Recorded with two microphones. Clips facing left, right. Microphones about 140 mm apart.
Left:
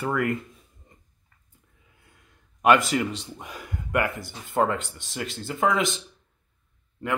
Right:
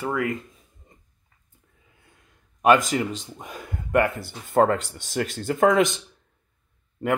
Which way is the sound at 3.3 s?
25° right (ahead or behind).